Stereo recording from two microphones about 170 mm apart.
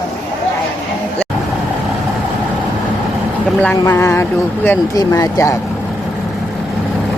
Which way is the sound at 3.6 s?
10° left (ahead or behind).